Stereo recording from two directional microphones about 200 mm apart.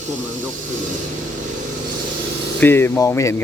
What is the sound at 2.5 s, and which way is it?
Speech, 10° left (ahead or behind).